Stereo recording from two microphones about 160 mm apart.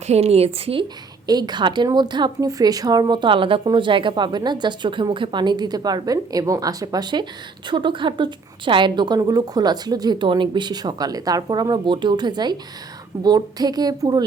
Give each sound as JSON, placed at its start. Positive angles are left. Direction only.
{"t": 0.1, "sound": "a woman's voice", "side_deg": -40}
{"t": 1.3, "sound": "a woman's voice", "side_deg": -25}